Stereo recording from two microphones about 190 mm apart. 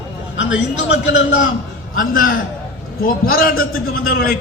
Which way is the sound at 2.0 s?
50° left (ahead or behind).